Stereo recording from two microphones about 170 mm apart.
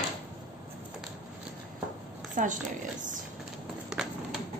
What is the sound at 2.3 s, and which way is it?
Speech, 50° right (ahead or behind).